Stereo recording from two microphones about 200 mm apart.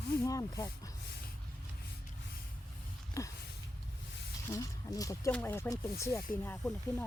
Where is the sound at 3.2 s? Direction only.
15° left (ahead or behind).